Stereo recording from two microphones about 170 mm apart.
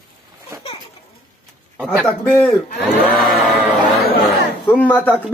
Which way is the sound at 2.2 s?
10° left (ahead or behind).